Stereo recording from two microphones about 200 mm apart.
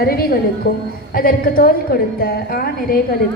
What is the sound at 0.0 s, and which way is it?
A woman's voice, 50° left (ahead or behind).